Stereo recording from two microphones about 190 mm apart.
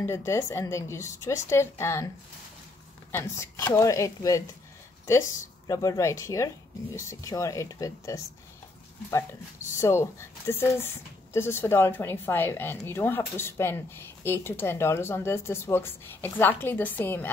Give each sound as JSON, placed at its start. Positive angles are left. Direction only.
{"t": 0.0, "sound": "speech", "side_deg": 15}
{"t": 3.1, "sound": "speech", "side_deg": 15}
{"t": 5.7, "sound": "speech", "side_deg": 20}